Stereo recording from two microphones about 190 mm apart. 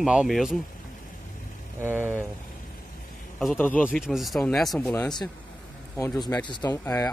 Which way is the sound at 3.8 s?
5° right (ahead or behind).